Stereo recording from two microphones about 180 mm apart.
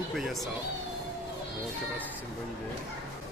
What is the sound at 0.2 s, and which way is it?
Speech, centre (ahead or behind).